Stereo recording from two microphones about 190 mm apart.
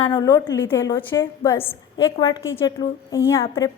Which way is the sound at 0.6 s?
15° left (ahead or behind).